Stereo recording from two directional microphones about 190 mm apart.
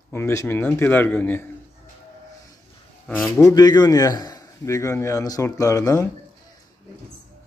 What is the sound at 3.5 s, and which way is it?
A man's voice, 20° left (ahead or behind).